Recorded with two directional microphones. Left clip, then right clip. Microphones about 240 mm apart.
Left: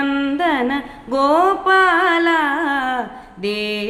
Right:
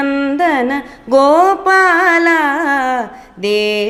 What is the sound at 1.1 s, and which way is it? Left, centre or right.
Music, right.